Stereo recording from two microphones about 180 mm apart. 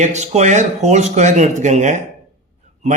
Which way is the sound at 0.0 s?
40° right (ahead or behind).